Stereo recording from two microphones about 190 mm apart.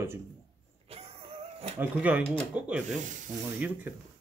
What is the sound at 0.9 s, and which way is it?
Music, 30° right (ahead or behind).